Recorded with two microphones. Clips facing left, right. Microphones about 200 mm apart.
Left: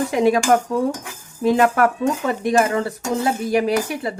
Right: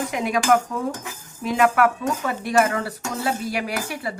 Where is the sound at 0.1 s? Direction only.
30° left (ahead or behind).